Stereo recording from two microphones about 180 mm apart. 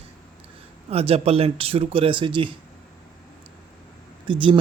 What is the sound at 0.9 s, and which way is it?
Speech, 35° right (ahead or behind).